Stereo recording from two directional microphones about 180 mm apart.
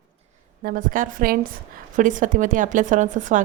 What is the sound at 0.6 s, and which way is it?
A woman's voice, 50° right (ahead or behind).